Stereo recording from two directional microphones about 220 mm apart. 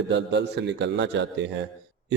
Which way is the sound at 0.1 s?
50° right (ahead or behind).